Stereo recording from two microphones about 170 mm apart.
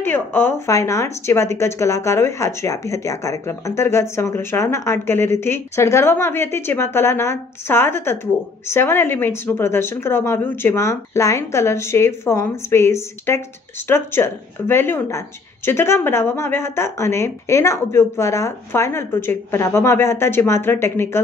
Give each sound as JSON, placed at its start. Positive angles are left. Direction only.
{"t": 0.0, "sound": "speech", "side_deg": 15}